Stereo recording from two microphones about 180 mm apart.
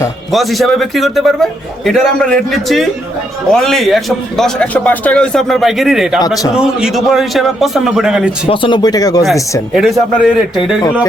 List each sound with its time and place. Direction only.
0.3 s a man's voice: centre (ahead or behind)
6.1 s speech: 20° left (ahead or behind)
6.6 s a man's voice: 5° right (ahead or behind)
8.4 s speech: 25° left (ahead or behind)
9.7 s a man's voice: centre (ahead or behind)